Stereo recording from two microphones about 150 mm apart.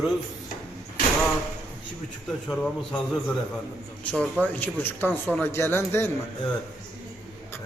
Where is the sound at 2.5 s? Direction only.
5° left (ahead or behind).